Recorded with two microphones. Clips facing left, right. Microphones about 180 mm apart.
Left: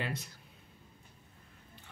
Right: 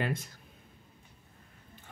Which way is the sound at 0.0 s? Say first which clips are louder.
Right 5 dB; 50° right (ahead or behind).